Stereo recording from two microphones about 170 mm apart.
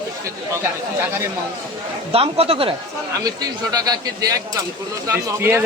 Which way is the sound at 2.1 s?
35° right (ahead or behind).